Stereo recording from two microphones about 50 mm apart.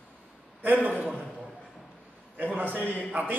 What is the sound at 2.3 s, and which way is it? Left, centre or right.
A man's voice, right.